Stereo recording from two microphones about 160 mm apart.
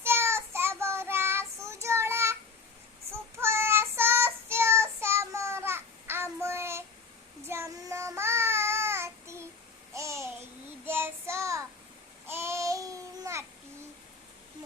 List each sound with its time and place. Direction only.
0.0 s child singing: 15° right (ahead or behind)
9.9 s babbling: 20° right (ahead or behind)
10.8 s child singing: 15° right (ahead or behind)
12.3 s babbling: 15° right (ahead or behind)